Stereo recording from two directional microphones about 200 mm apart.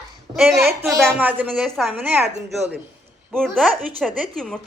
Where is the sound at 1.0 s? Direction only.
10° right (ahead or behind).